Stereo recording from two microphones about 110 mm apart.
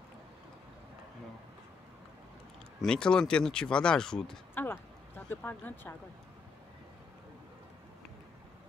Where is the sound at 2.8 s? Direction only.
5° left (ahead or behind).